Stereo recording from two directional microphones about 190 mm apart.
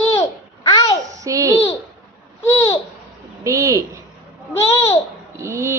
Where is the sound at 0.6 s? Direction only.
20° left (ahead or behind).